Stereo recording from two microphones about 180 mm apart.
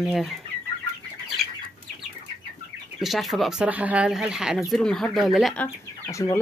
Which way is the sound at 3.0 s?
Centre (ahead or behind).